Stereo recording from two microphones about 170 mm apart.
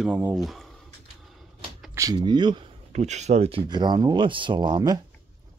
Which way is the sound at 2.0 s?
25° right (ahead or behind).